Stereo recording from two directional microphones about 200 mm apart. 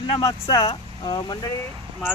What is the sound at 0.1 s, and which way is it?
Speech, 20° left (ahead or behind).